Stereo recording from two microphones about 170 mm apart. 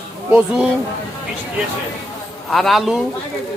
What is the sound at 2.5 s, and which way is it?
Speech, centre (ahead or behind).